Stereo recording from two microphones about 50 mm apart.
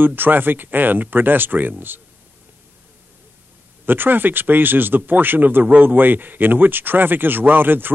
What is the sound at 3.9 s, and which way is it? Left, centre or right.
Speech, right.